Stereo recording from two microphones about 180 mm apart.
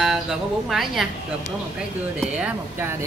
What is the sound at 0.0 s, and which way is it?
Speech, centre (ahead or behind).